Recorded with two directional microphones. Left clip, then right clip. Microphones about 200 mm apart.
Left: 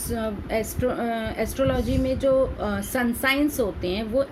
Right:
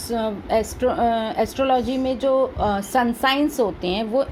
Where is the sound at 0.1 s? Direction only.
20° right (ahead or behind).